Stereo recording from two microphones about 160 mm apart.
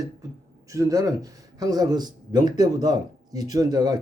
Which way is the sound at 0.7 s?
20° right (ahead or behind).